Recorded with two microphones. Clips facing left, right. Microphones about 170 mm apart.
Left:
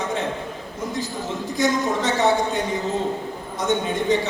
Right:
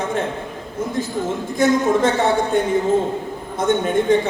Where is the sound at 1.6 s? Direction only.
50° right (ahead or behind).